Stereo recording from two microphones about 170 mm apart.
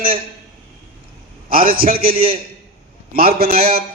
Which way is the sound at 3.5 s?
35° right (ahead or behind).